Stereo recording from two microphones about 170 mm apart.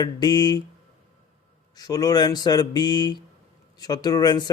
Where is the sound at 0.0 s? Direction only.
25° left (ahead or behind).